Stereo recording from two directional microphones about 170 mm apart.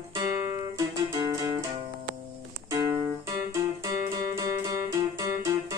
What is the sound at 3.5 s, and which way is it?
Music, 20° right (ahead or behind).